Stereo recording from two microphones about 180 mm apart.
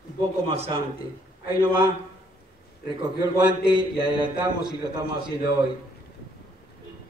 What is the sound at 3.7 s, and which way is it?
Speech, 25° right (ahead or behind).